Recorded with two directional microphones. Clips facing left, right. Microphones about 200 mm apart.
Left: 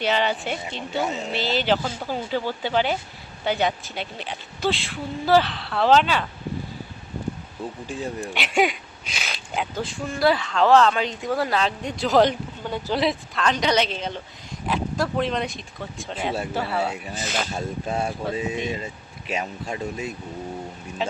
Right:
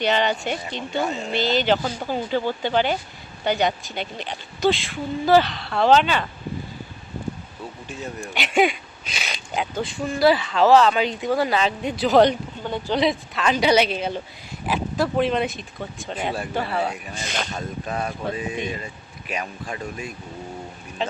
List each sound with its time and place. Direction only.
0.0 s speech: 5° left (ahead or behind)
7.9 s speech: 35° left (ahead or behind)
8.3 s speech: centre (ahead or behind)
17.5 s speech: 25° left (ahead or behind)
21.0 s speech: 5° left (ahead or behind)